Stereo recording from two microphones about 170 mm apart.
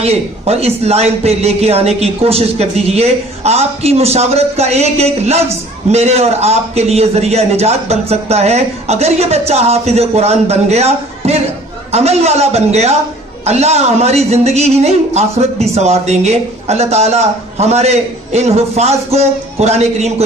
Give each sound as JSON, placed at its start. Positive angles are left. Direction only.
{"t": 0.0, "sound": "a man's voice", "side_deg": -35}